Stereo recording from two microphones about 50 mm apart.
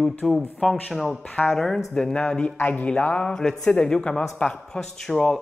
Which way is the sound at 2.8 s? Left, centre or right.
Left.